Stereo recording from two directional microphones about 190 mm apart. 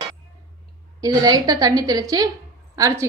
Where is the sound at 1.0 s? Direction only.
20° right (ahead or behind).